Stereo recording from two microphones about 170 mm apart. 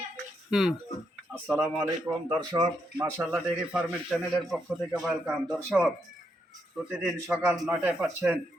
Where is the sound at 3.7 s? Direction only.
Centre (ahead or behind).